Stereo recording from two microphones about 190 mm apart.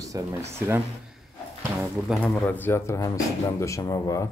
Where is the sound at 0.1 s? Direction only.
15° right (ahead or behind).